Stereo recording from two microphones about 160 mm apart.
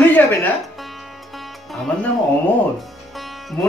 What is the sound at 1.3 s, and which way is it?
Music, centre (ahead or behind).